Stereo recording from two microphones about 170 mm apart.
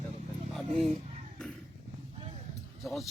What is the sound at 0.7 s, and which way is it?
Speech, 35° right (ahead or behind).